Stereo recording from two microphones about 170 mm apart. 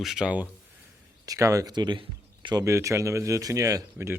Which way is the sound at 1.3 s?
20° right (ahead or behind).